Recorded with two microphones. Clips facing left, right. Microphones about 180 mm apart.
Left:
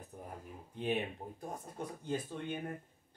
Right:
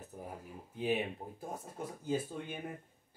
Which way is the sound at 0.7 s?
5° right (ahead or behind).